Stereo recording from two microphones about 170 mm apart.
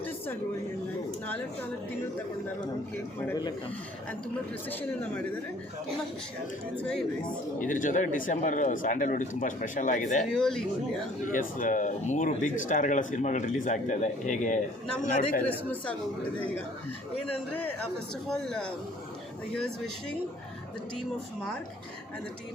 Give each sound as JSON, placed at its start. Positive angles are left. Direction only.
{"t": 4.7, "sound": "speech", "side_deg": 10}
{"t": 6.7, "sound": "speech", "side_deg": 5}
{"t": 7.6, "sound": "speech", "side_deg": 50}
{"t": 10.3, "sound": "speech", "side_deg": 0}
{"t": 11.3, "sound": "speech", "side_deg": 50}
{"t": 15.4, "sound": "speech", "side_deg": 10}
{"t": 18.3, "sound": "speech", "side_deg": 5}